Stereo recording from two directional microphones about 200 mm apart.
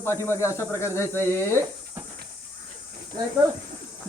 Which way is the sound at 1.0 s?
15° right (ahead or behind).